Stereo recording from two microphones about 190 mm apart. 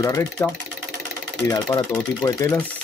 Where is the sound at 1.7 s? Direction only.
20° left (ahead or behind).